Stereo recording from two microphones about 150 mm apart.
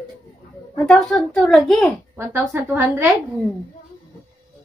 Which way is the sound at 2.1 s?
15° right (ahead or behind).